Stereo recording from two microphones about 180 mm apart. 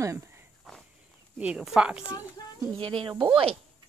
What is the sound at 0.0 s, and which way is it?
Walk, 15° right (ahead or behind).